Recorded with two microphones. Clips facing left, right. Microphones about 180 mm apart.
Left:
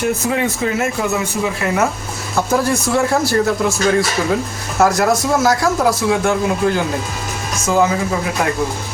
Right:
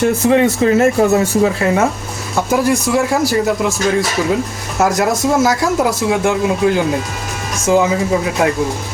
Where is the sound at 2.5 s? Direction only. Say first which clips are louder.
Right 3 dB; 15° right (ahead or behind).